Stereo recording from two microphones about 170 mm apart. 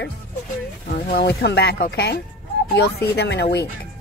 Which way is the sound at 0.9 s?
70° left (ahead or behind).